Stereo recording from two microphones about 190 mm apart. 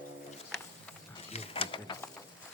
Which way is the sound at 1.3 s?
30° left (ahead or behind).